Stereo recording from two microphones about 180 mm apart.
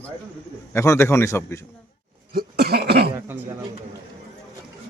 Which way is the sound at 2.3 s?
60° right (ahead or behind).